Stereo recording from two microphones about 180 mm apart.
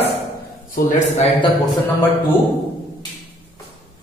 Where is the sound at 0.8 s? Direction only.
55° left (ahead or behind).